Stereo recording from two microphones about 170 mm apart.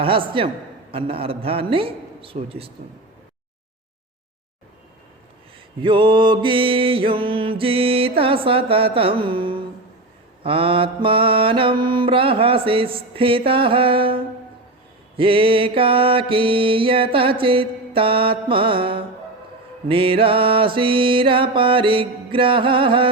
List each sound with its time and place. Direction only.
0.0 s mantra: 30° right (ahead or behind)
5.8 s mantra: 30° right (ahead or behind)